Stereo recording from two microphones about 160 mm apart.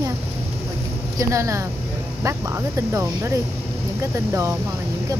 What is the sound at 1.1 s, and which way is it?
Speech, 20° right (ahead or behind).